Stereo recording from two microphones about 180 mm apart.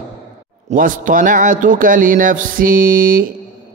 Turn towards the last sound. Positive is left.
turn(degrees=-50)  # may be behind; listen again after turning